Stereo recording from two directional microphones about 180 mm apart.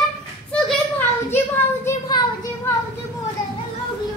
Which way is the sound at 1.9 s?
20° left (ahead or behind).